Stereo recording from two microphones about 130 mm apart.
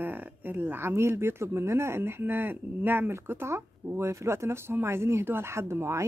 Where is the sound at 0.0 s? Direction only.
15° right (ahead or behind).